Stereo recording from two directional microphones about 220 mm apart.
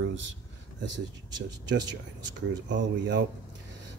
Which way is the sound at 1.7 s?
55° right (ahead or behind).